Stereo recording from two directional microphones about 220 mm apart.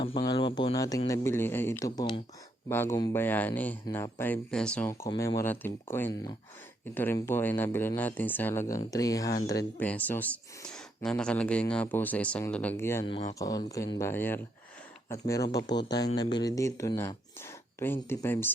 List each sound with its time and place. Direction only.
0.0 s speech: 25° left (ahead or behind)
16.1 s speech: 20° left (ahead or behind)